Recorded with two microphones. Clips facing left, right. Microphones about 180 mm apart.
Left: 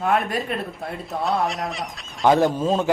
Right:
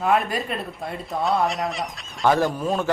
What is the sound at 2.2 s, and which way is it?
Speech, 20° left (ahead or behind).